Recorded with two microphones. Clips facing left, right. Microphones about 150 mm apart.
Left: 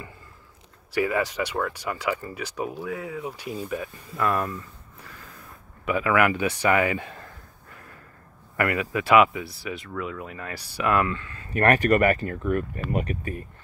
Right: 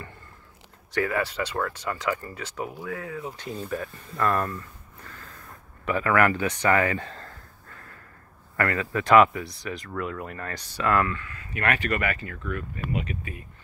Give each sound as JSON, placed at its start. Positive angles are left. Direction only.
{"t": 0.9, "sound": "speech", "side_deg": 15}
{"t": 11.5, "sound": "speech", "side_deg": 45}